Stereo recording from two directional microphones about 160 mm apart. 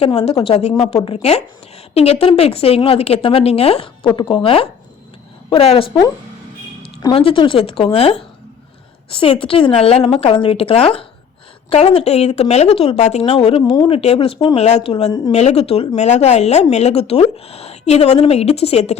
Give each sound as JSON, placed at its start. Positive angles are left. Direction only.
{"t": 0.0, "sound": "speech", "side_deg": 40}
{"t": 7.0, "sound": "speech", "side_deg": 35}